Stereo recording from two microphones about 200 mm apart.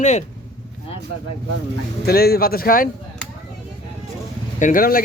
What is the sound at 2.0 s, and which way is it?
Speech, 50° left (ahead or behind).